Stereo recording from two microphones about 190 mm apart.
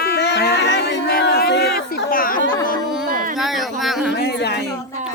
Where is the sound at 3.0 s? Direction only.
50° right (ahead or behind).